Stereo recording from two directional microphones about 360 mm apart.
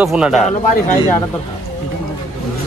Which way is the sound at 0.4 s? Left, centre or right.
Centre.